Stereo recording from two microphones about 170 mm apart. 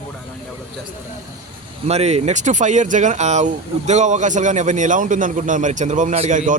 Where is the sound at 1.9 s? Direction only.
40° right (ahead or behind).